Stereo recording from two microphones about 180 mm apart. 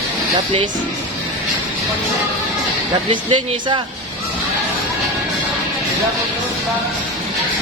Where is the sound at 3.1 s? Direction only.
25° right (ahead or behind).